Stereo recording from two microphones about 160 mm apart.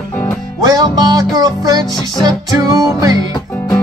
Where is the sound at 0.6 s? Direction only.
25° right (ahead or behind).